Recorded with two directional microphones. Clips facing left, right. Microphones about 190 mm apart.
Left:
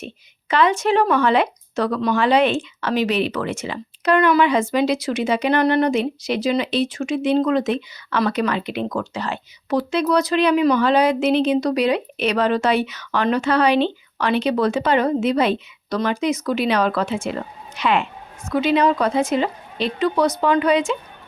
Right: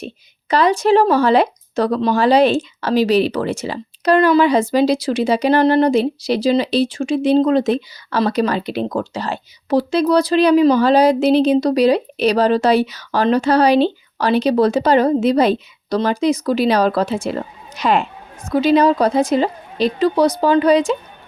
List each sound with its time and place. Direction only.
0.0 s speech: 35° right (ahead or behind)